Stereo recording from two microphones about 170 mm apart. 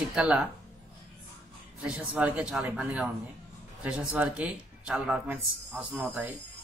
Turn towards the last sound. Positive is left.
turn(degrees=0)  # may be behind; listen again after turning